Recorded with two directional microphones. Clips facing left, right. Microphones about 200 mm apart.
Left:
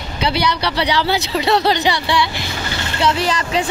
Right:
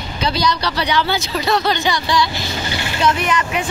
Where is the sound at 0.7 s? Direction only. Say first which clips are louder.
Left 1 dB; 30° left (ahead or behind).